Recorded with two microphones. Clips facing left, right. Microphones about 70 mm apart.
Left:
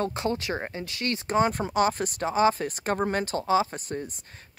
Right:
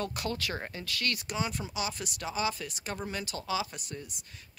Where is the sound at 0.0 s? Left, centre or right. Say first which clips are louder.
Left 6 dB; left.